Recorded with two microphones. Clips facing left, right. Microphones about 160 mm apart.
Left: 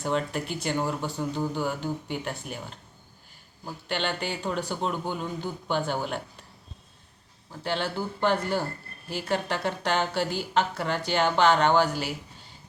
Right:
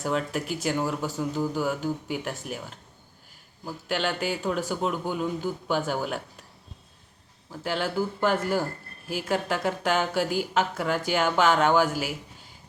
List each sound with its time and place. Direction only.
0.0 s speech: 5° right (ahead or behind)
3.8 s a woman's voice: 5° right (ahead or behind)
7.6 s a woman's voice: 5° right (ahead or behind)